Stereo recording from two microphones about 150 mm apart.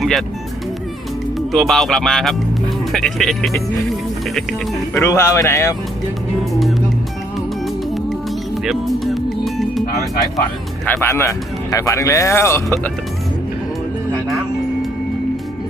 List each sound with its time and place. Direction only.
0.0 s speech: centre (ahead or behind)
1.5 s speech: centre (ahead or behind)
5.0 s speech: 20° left (ahead or behind)
8.6 s speech: centre (ahead or behind)
9.9 s speech: 20° left (ahead or behind)